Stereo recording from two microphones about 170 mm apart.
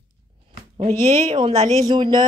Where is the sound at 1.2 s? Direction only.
30° right (ahead or behind).